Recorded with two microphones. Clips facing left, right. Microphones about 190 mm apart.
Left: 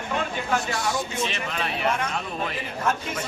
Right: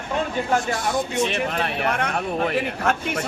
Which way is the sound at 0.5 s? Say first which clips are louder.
Right 3 dB; 50° right (ahead or behind).